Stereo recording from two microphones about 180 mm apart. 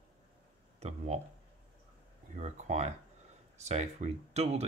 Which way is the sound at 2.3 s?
40° right (ahead or behind).